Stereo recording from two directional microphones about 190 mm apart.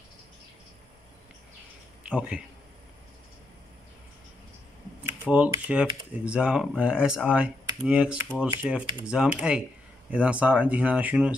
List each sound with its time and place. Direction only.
2.0 s speech: 5° right (ahead or behind)
5.3 s speech: 5° right (ahead or behind)